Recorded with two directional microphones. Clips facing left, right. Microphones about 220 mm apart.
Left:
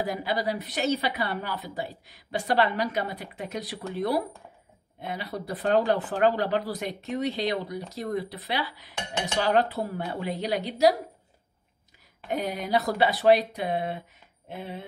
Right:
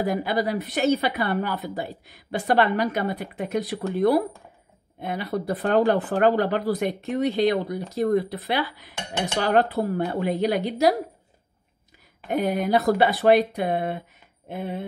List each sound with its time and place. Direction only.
0.0 s speech: 55° right (ahead or behind)
12.3 s speech: 55° right (ahead or behind)